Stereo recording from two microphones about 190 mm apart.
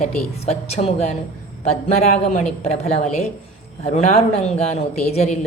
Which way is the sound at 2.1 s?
35° left (ahead or behind).